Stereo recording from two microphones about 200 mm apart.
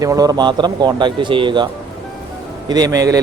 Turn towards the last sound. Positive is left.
turn(degrees=-15)  # may be behind; listen again after turning